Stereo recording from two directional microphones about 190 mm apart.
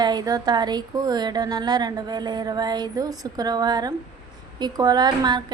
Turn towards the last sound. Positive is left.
turn(degrees=-25)  # may be behind; listen again after turning